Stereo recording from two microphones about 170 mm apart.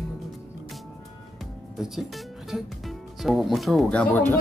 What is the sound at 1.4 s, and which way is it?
Speech, centre (ahead or behind).